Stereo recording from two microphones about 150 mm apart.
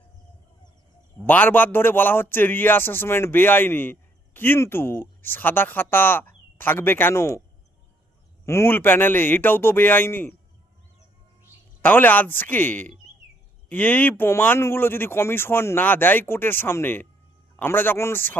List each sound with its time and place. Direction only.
1.3 s speech: 15° left (ahead or behind)
8.4 s speech: 15° left (ahead or behind)
11.8 s speech: 10° left (ahead or behind)